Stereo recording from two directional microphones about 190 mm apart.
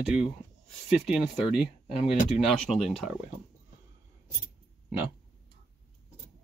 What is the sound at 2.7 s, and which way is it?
Speech, centre (ahead or behind).